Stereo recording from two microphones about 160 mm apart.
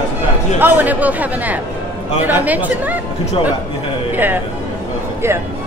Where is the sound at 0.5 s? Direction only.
10° right (ahead or behind).